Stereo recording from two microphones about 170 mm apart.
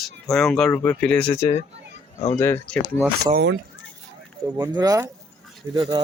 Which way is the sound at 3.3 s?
80° right.